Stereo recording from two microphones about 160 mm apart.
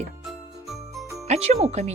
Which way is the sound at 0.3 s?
Centre (ahead or behind).